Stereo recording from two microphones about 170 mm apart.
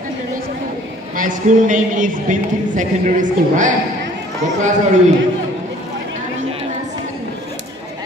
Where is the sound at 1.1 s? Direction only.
50° right (ahead or behind).